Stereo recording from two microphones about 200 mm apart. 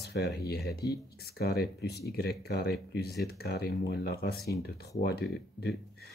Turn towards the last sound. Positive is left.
turn(degrees=55)  # may be behind; listen again after turning